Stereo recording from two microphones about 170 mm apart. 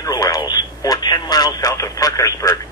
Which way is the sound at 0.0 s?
20° left (ahead or behind).